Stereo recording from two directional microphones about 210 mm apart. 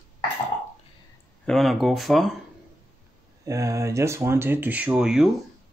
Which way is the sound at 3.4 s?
15° right (ahead or behind).